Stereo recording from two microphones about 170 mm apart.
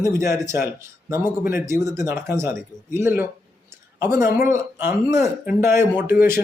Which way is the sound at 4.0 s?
15° right (ahead or behind).